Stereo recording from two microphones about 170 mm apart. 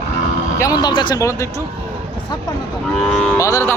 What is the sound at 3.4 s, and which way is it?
Speech, 20° left (ahead or behind).